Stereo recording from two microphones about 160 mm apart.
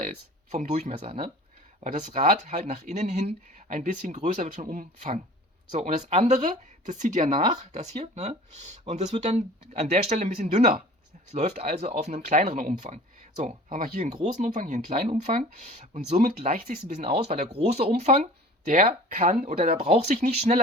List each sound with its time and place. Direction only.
0.5 s speech: 45° right (ahead or behind)